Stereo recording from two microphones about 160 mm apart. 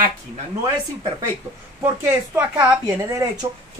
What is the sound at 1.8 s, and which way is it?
A woman's voice, 15° right (ahead or behind).